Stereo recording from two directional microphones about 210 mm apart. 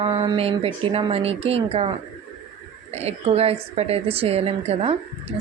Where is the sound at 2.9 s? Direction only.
30° right (ahead or behind).